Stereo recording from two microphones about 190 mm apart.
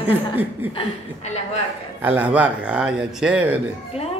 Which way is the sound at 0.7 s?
35° left (ahead or behind).